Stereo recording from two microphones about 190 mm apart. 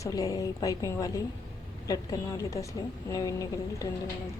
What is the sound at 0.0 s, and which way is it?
Speech, 15° left (ahead or behind).